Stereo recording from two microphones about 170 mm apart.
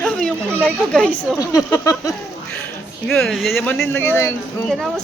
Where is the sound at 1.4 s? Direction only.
20° left (ahead or behind).